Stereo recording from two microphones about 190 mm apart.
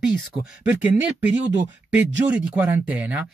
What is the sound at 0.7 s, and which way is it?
Speech, 10° right (ahead or behind).